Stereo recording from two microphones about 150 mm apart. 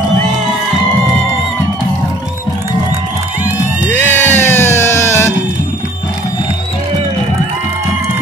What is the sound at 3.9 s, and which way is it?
Music, 15° left (ahead or behind).